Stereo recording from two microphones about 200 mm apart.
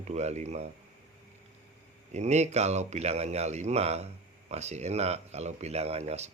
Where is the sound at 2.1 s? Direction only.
35° right (ahead or behind).